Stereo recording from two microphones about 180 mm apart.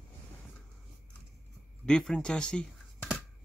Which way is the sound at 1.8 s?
5° left (ahead or behind).